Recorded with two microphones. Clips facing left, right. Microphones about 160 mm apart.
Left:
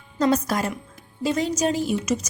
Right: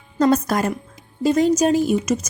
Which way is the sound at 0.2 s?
45° right (ahead or behind).